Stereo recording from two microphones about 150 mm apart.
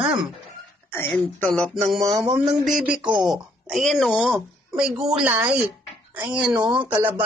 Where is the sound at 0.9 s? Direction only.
15° left (ahead or behind).